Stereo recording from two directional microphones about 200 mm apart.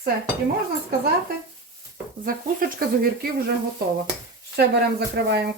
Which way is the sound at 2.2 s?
45° right (ahead or behind).